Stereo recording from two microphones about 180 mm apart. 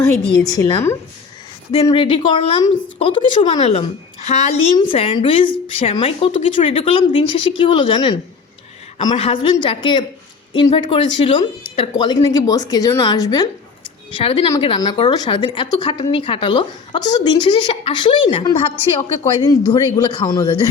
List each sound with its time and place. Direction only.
0.4 s a woman's voice: 20° left (ahead or behind)
1.9 s speech: 30° left (ahead or behind)
4.9 s speech: 30° left (ahead or behind)
14.1 s a woman's voice: 30° left (ahead or behind)